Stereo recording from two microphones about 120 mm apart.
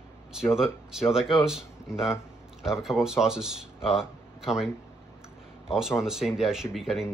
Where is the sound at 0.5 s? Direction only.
5° right (ahead or behind).